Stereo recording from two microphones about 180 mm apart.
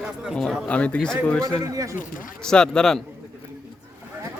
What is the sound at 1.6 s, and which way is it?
Speech, 20° right (ahead or behind).